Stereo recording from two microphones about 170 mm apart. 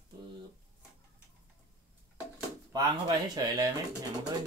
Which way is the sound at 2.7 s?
25° right (ahead or behind).